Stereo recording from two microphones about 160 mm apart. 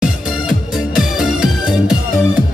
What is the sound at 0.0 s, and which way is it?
Music, 5° right (ahead or behind).